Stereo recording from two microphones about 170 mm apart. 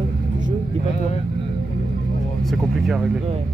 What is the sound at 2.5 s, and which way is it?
Speech, centre (ahead or behind).